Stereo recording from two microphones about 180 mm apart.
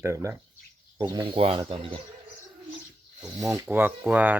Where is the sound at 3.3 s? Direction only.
20° right (ahead or behind).